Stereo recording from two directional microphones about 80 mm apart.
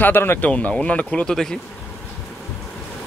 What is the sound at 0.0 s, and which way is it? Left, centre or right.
Speech, left.